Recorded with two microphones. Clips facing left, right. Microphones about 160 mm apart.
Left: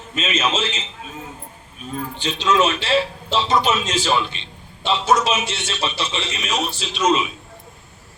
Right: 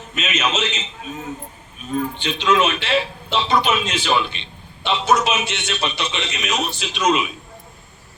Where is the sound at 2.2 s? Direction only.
35° left (ahead or behind).